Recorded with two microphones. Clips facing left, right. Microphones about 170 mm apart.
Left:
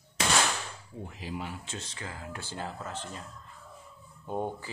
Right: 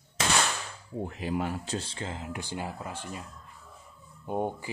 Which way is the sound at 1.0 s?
60° right (ahead or behind).